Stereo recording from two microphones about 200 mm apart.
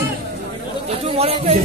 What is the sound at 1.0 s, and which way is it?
Speech, 30° right (ahead or behind).